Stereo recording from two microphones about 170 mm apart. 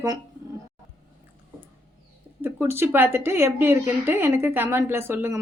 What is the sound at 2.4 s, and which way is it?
Speech, 15° right (ahead or behind).